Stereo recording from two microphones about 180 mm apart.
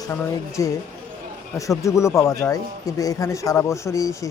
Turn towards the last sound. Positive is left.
turn(degrees=15)  # may be behind; listen again after turning